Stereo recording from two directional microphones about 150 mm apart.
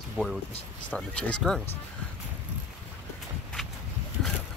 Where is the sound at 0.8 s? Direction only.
10° left (ahead or behind).